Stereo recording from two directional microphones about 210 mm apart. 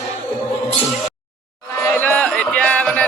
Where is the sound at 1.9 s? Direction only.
10° left (ahead or behind).